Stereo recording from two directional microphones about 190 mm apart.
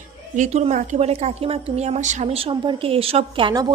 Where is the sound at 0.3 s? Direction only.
40° right (ahead or behind).